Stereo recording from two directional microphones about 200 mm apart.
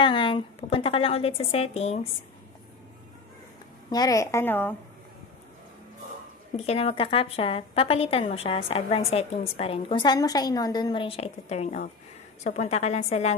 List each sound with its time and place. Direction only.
0.0 s speech: 25° left (ahead or behind)
3.9 s a woman's voice: 20° left (ahead or behind)
6.5 s a woman's voice: 30° left (ahead or behind)